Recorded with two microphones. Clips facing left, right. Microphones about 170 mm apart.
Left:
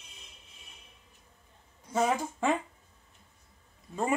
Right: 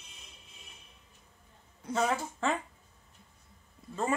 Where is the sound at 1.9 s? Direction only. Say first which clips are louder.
Left 2 dB; 10° left (ahead or behind).